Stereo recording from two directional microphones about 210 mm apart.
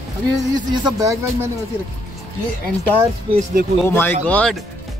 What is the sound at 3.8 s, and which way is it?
Speech, 10° left (ahead or behind).